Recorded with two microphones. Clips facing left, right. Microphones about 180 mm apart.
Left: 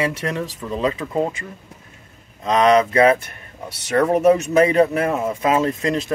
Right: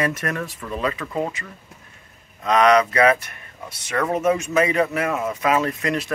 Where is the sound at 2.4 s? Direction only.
25° left (ahead or behind).